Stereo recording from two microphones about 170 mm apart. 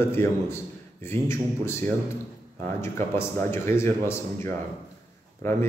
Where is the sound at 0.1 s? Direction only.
15° left (ahead or behind).